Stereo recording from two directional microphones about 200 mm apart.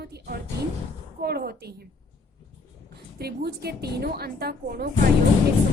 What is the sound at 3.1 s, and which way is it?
A woman's voice, 50° right (ahead or behind).